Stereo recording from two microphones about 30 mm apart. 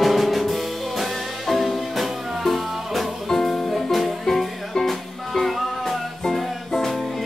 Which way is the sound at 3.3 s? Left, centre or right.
Centre.